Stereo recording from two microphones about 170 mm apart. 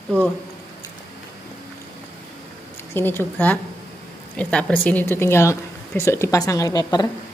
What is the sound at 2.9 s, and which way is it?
Speech, 10° left (ahead or behind).